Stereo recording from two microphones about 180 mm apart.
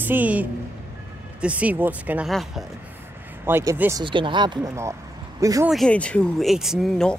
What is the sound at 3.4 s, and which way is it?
Speech, 15° right (ahead or behind).